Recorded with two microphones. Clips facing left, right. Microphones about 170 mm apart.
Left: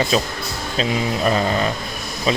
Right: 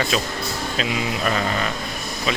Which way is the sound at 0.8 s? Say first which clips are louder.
Left 5 dB; 30° left (ahead or behind).